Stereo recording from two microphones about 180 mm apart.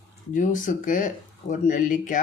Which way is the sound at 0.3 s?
45° left (ahead or behind).